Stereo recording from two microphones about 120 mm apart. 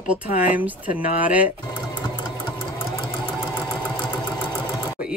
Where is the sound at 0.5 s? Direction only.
15° right (ahead or behind).